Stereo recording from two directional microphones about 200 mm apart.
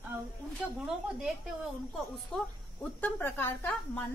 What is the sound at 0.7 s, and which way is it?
A woman's voice, 5° right (ahead or behind).